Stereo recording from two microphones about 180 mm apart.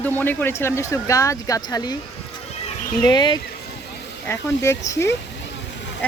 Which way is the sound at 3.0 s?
25° left (ahead or behind).